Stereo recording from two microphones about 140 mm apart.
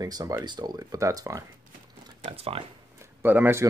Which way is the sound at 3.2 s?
15° right (ahead or behind).